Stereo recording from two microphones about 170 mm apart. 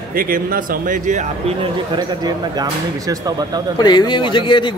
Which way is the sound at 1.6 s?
25° right (ahead or behind).